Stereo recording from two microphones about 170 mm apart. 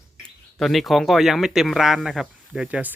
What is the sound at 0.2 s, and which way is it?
Speech, centre (ahead or behind).